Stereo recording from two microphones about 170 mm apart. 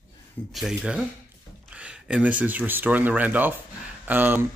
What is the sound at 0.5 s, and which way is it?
Speech, 5° right (ahead or behind).